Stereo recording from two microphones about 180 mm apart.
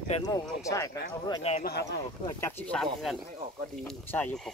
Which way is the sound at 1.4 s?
35° left (ahead or behind).